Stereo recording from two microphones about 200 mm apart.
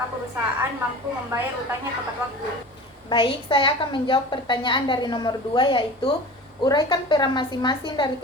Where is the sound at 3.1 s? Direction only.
25° left (ahead or behind).